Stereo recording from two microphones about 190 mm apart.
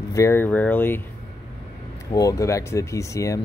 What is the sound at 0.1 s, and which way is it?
Speech, 15° left (ahead or behind).